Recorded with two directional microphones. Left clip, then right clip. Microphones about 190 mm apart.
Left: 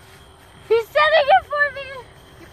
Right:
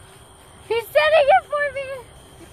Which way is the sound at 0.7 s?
40° right (ahead or behind).